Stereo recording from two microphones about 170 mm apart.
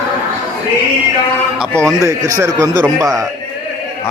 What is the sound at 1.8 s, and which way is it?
A man's voice, 15° right (ahead or behind).